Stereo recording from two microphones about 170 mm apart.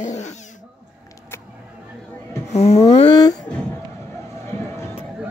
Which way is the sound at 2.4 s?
40° left (ahead or behind).